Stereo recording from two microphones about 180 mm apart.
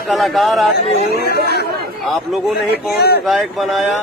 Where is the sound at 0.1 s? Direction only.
Centre (ahead or behind).